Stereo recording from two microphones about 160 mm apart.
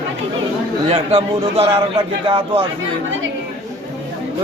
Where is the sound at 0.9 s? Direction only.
35° right (ahead or behind).